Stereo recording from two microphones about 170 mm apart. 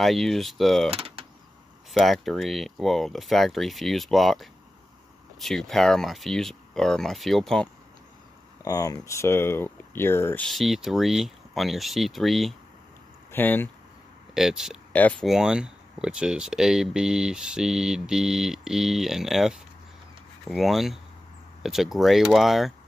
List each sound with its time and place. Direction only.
0.0 s speech: centre (ahead or behind)
0.9 s speech: 35° right (ahead or behind)
2.0 s speech: centre (ahead or behind)
8.6 s speech: 20° left (ahead or behind)
10.4 s speech: centre (ahead or behind)
13.3 s speech: 10° left (ahead or behind)
14.3 s speech: centre (ahead or behind)
14.9 s speech: 10° left (ahead or behind)
15.2 s speech: 5° right (ahead or behind)